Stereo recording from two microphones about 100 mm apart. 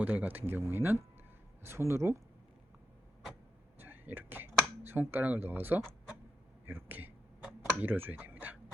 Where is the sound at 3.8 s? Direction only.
20° right (ahead or behind).